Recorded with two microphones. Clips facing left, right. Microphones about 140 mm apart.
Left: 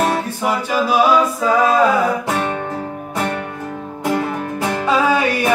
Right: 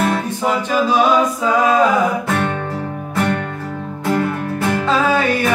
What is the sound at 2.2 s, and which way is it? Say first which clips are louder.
Guitar: right 1 dB; 15° left (ahead or behind).